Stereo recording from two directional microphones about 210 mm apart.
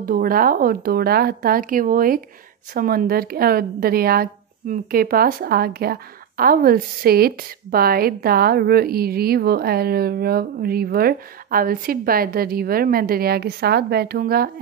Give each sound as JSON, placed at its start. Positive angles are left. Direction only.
{"t": 0.0, "sound": "a woman's voice", "side_deg": -45}